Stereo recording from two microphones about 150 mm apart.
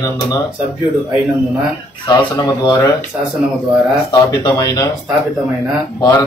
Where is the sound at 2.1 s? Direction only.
30° left (ahead or behind).